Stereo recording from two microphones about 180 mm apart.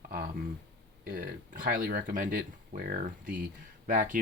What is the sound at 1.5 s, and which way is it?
Speech, 50° right (ahead or behind).